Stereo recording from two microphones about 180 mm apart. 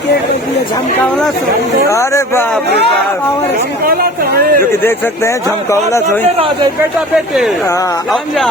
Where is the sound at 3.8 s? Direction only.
55° right (ahead or behind).